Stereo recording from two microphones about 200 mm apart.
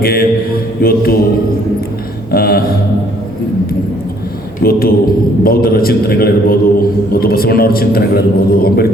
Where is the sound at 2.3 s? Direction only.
50° left (ahead or behind).